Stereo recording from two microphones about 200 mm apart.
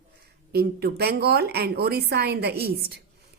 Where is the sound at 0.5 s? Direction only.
50° right (ahead or behind).